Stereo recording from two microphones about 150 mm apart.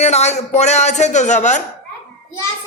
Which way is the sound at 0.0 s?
45° left (ahead or behind).